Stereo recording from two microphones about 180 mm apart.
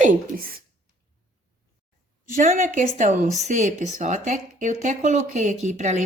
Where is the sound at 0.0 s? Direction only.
50° right (ahead or behind).